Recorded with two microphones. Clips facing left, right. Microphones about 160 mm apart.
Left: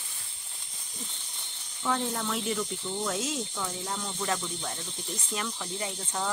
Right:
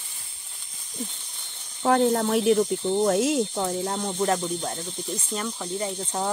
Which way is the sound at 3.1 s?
60° right (ahead or behind).